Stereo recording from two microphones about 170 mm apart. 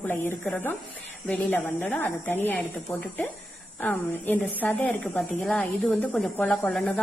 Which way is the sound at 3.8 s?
10° left (ahead or behind).